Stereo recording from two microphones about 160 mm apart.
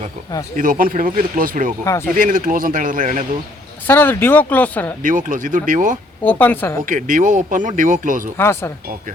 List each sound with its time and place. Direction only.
0.5 s speech: 60° right (ahead or behind)
1.8 s speech: 20° left (ahead or behind)
2.1 s speech: 60° right (ahead or behind)
3.8 s speech: 15° left (ahead or behind)
5.0 s speech: 55° right (ahead or behind)
6.2 s speech: 10° left (ahead or behind)
6.8 s speech: 55° right (ahead or behind)
8.4 s speech: 15° left (ahead or behind)